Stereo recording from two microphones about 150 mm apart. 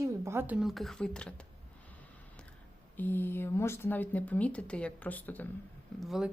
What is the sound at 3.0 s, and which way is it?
Speech, 15° left (ahead or behind).